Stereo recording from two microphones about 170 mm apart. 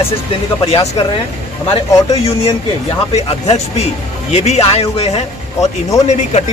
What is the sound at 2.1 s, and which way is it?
Speech, 35° left (ahead or behind).